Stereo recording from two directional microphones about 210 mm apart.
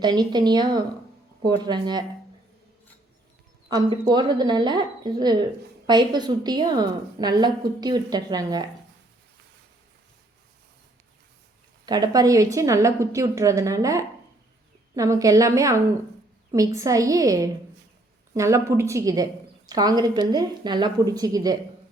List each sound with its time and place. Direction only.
0.0 s a woman's voice: 20° right (ahead or behind)
3.7 s a woman's voice: 20° right (ahead or behind)
11.9 s a woman's voice: 20° right (ahead or behind)